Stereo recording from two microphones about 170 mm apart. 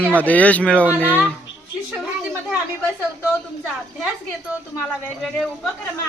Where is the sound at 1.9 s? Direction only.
5° right (ahead or behind).